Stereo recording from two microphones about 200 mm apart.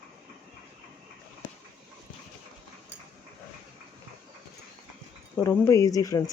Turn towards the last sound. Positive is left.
turn(degrees=15)  # may be behind; listen again after turning